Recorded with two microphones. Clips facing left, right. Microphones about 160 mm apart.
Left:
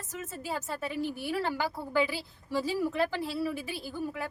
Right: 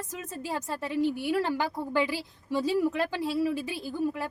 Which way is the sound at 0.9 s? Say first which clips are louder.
Right 7 dB; 20° right (ahead or behind).